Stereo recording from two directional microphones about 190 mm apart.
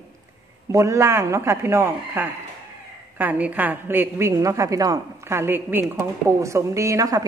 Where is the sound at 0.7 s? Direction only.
15° right (ahead or behind).